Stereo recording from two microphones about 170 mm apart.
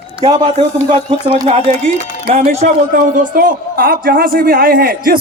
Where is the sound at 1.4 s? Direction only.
45° right (ahead or behind).